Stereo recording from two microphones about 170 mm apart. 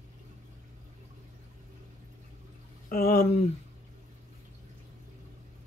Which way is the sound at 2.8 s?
60° left (ahead or behind).